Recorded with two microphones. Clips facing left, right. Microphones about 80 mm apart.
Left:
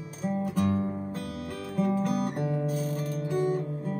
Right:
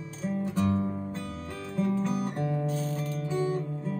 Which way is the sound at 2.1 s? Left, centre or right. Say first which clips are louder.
Left 2 dB; left.